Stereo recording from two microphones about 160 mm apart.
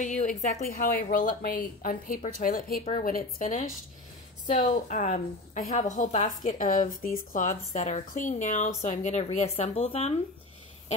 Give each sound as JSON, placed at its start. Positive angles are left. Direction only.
{"t": 0.0, "sound": "a woman's voice", "side_deg": 50}